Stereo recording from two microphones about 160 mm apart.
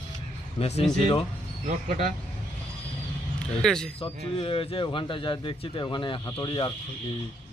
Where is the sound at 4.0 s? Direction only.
35° left (ahead or behind).